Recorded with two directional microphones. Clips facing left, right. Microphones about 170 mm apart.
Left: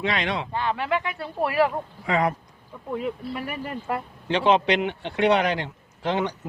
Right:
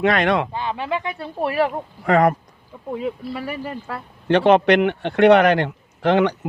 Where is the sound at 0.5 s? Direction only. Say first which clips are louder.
Even; 15° right (ahead or behind).